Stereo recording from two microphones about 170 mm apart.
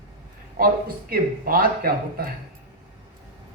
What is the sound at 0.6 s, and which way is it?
Speech, 60° right (ahead or behind).